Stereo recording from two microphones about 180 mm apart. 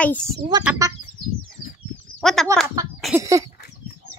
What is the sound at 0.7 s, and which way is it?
Speech, 15° right (ahead or behind).